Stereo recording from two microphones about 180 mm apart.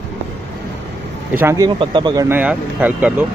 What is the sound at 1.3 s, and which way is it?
Speech, 15° right (ahead or behind).